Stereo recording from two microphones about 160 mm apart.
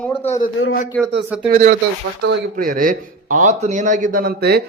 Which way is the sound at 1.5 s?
55° right (ahead or behind).